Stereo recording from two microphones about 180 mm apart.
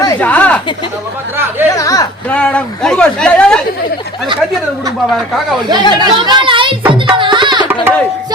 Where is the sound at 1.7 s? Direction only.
20° left (ahead or behind).